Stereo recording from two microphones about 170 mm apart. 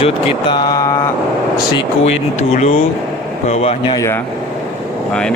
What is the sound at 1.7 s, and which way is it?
Speech, 40° left (ahead or behind).